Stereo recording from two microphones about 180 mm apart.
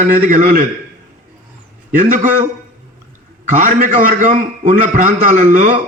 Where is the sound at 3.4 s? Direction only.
45° right (ahead or behind).